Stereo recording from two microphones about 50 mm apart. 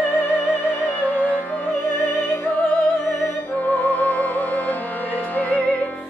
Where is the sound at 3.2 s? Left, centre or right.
Left.